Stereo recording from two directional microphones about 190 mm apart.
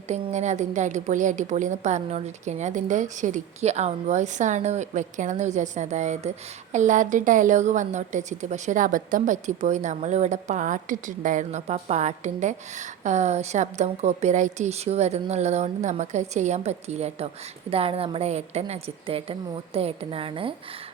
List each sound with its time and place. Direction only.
0.1 s a woman's voice: 35° right (ahead or behind)